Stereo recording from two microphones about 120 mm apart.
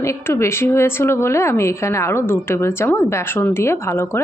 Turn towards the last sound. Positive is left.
turn(degrees=20)  # may be behind; listen again after turning